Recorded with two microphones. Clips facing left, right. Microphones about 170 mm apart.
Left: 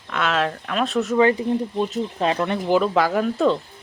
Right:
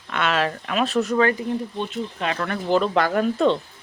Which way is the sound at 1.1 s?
20° left (ahead or behind).